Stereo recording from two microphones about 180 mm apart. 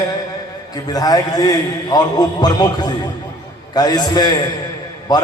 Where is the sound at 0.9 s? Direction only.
20° left (ahead or behind).